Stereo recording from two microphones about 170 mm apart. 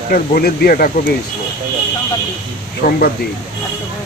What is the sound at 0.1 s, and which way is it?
Speech, 65° left (ahead or behind).